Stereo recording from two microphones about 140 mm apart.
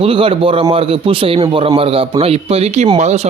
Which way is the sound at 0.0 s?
40° right (ahead or behind).